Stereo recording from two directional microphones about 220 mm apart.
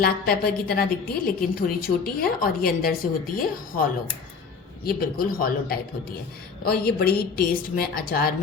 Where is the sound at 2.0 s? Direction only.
40° left (ahead or behind).